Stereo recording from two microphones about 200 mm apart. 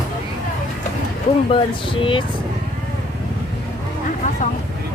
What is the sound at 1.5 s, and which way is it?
Speech, 25° left (ahead or behind).